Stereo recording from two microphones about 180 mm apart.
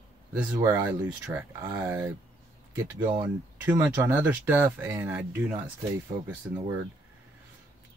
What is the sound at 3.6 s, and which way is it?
Speech, 10° right (ahead or behind).